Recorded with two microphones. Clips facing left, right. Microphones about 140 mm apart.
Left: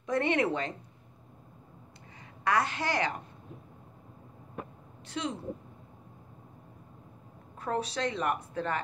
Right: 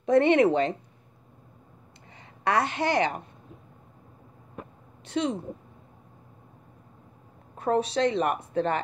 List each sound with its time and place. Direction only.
0.0 s a woman's voice: 25° right (ahead or behind)
2.4 s a woman's voice: 25° right (ahead or behind)
5.0 s speech: 25° right (ahead or behind)
7.5 s a woman's voice: 25° right (ahead or behind)